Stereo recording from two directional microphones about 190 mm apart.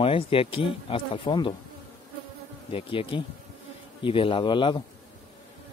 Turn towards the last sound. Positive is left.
turn(degrees=25)  # may be behind; listen again after turning